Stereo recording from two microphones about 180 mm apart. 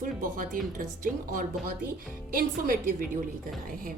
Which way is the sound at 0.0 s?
50° right (ahead or behind).